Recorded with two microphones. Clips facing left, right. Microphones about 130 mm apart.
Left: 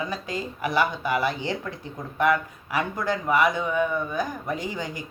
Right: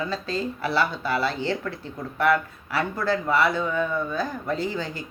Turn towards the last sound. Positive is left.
turn(degrees=15)  # may be behind; listen again after turning